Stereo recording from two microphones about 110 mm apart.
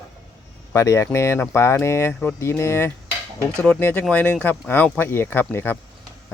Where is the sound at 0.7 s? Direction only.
30° left (ahead or behind).